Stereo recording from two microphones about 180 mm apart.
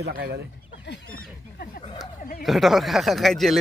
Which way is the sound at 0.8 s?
65° left (ahead or behind).